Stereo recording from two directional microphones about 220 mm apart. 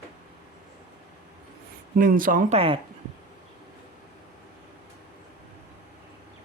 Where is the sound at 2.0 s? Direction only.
40° right (ahead or behind).